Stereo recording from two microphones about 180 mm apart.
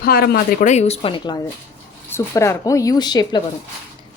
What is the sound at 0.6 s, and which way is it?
Speech, 40° left (ahead or behind).